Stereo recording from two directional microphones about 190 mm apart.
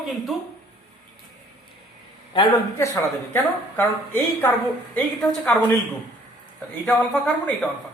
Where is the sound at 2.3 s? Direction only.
25° left (ahead or behind); by 5.7 s 5° left (ahead or behind).